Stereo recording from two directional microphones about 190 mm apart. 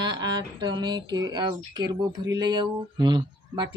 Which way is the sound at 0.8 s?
20° right (ahead or behind).